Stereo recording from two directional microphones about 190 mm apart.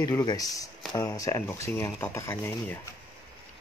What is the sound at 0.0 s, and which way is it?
Speech, 20° left (ahead or behind).